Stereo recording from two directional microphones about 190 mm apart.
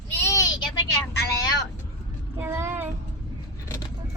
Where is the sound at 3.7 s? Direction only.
20° left (ahead or behind).